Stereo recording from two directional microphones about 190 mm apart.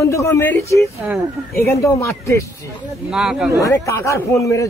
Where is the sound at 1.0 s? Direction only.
5° right (ahead or behind).